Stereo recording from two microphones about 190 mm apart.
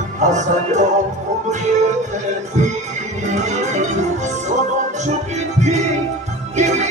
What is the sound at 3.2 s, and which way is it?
Music, 40° right (ahead or behind).